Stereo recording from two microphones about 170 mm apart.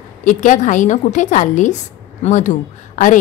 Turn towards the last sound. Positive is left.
turn(degrees=50)  # may be behind; listen again after turning